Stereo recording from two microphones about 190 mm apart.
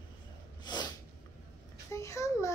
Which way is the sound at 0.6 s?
20° left (ahead or behind).